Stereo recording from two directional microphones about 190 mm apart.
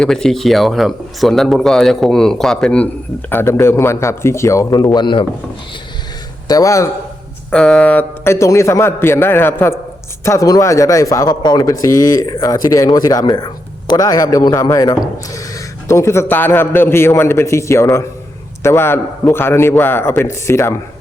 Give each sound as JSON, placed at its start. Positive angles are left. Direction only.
{"t": 0.0, "sound": "a man's voice", "side_deg": 5}
{"t": 6.5, "sound": "a man's voice", "side_deg": 15}
{"t": 7.5, "sound": "a man's voice", "side_deg": 5}